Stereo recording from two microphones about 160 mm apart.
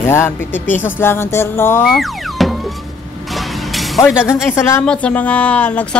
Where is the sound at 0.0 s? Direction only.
15° left (ahead or behind).